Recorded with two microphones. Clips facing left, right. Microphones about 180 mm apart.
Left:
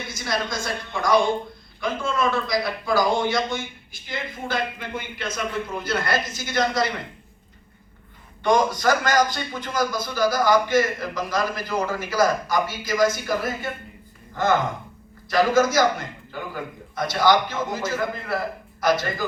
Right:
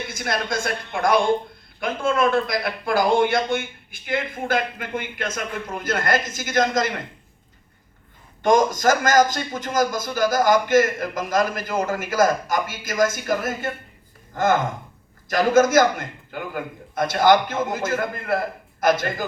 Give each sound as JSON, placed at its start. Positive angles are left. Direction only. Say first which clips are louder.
{"t": 0.1, "sound": "a man's voice", "louder": "even", "side_deg": -55}
{"t": 8.4, "sound": "a man's voice", "louder": "right 2 dB", "side_deg": -45}